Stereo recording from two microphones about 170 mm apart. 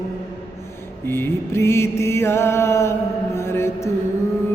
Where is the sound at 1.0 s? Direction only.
15° left (ahead or behind).